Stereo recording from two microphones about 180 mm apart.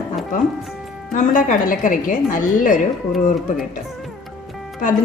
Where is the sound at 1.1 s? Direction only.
45° left (ahead or behind).